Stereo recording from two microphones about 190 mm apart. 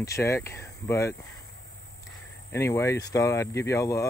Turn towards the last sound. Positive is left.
turn(degrees=15)  # may be behind; listen again after turning